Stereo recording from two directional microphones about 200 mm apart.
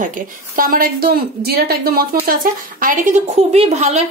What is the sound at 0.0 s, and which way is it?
A woman's voice, 45° right (ahead or behind).